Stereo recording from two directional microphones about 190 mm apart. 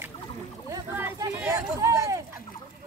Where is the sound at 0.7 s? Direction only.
20° right (ahead or behind).